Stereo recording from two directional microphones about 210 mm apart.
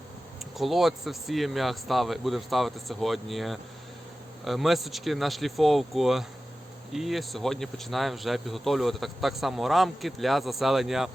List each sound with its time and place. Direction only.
0.5 s speech: centre (ahead or behind)